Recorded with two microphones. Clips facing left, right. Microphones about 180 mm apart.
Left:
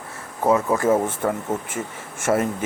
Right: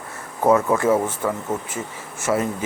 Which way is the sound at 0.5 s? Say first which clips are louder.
Right 1 dB; 30° left (ahead or behind).